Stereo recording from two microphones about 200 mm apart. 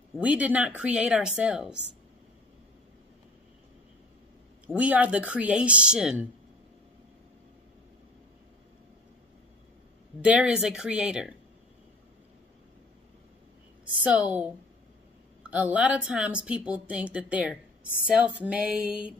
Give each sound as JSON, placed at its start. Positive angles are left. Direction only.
{"t": 0.2, "sound": "speech", "side_deg": -5}
{"t": 4.6, "sound": "a woman's voice", "side_deg": -5}
{"t": 10.2, "sound": "speech", "side_deg": -5}
{"t": 14.0, "sound": "a woman's voice", "side_deg": -5}
{"t": 15.5, "sound": "a woman's voice", "side_deg": -5}